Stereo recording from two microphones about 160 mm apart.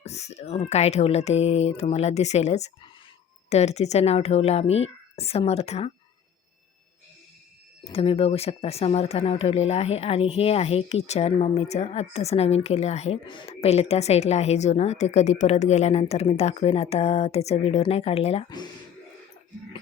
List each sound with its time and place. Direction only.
0.0 s speech: 45° left (ahead or behind)
7.9 s speech: 35° left (ahead or behind)
13.2 s speech: 30° left (ahead or behind)
18.4 s speech: 25° left (ahead or behind)